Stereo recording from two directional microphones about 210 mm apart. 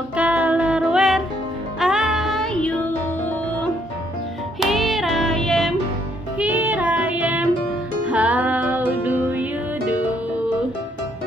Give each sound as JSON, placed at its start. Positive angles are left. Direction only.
{"t": 0.1, "sound": "music", "side_deg": -5}
{"t": 4.6, "sound": "music", "side_deg": 0}